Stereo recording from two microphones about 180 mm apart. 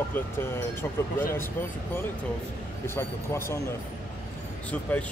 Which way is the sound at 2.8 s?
15° left (ahead or behind).